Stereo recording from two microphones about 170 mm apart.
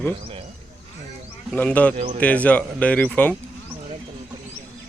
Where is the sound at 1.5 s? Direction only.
10° left (ahead or behind).